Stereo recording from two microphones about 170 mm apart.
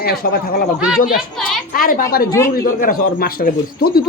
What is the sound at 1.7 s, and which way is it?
A woman's voice, 55° left (ahead or behind).